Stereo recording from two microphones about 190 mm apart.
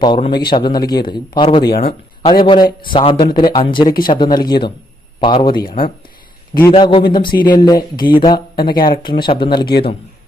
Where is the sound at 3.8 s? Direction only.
50° left (ahead or behind).